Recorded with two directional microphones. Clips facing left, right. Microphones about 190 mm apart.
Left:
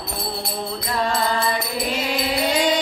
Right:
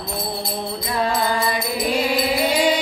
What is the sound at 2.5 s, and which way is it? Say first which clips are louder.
Music: even; 10° right (ahead or behind).